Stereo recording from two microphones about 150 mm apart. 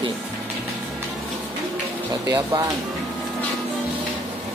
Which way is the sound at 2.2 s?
25° right (ahead or behind).